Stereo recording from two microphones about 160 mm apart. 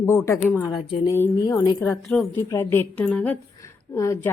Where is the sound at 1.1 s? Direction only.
15° left (ahead or behind).